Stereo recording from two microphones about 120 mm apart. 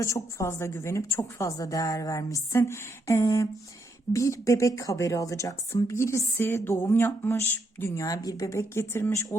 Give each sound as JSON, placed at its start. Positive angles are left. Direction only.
{"t": 0.0, "sound": "a woman's voice", "side_deg": 25}